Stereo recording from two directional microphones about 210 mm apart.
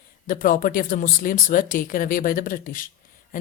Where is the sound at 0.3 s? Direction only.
40° left (ahead or behind).